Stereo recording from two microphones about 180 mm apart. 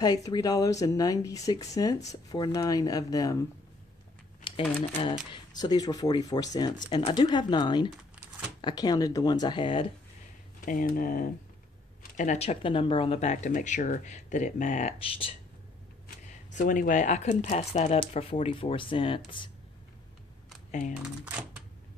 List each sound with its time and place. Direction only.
0.0 s speech: 20° left (ahead or behind)
4.5 s a sound: 25° left (ahead or behind)
5.3 s speech: 25° left (ahead or behind)
10.6 s speech: 50° left (ahead or behind); by 15.3 s 30° left (ahead or behind)
16.5 s speech: 45° left (ahead or behind); by 19.5 s 30° left (ahead or behind)
21.0 s speech: 5° right (ahead or behind)